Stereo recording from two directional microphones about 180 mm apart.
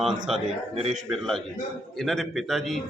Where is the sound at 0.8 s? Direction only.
40° right (ahead or behind).